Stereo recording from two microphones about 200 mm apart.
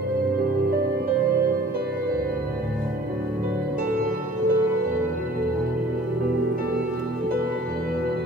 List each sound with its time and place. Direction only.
3.9 s music: 45° right (ahead or behind)